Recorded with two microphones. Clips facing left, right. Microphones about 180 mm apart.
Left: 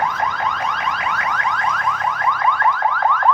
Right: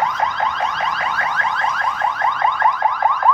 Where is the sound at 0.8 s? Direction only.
30° right (ahead or behind).